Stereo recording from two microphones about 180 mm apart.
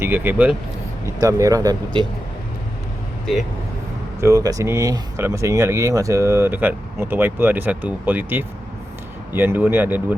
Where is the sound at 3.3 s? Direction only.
Centre (ahead or behind).